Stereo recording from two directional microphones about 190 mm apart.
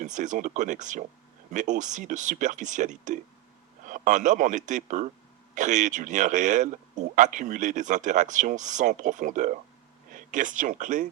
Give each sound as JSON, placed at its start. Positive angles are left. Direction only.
{"t": 0.0, "sound": "speech", "side_deg": -40}